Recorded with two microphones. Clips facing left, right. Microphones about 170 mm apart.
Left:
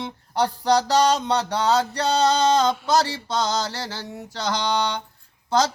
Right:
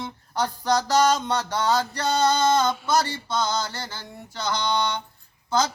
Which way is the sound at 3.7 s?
80° left.